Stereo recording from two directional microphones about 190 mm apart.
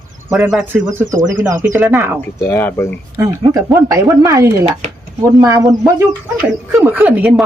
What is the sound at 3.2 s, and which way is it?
Speech, 20° right (ahead or behind).